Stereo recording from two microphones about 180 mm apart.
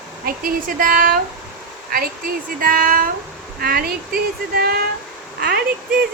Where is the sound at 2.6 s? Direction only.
55° right (ahead or behind).